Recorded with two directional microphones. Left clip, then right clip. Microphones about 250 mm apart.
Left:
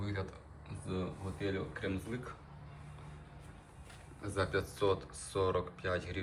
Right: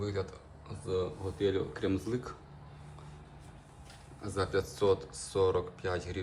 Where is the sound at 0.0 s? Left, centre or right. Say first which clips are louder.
Right 6 dB; centre.